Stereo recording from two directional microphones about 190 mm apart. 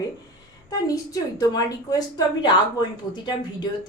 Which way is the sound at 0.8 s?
20° left (ahead or behind).